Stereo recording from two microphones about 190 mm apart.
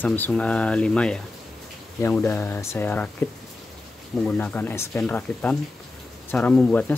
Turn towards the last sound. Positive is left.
turn(degrees=5)  # may be behind; listen again after turning